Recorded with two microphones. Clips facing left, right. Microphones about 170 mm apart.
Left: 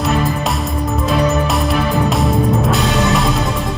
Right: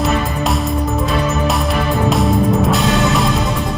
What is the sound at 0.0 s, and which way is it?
Music, centre (ahead or behind).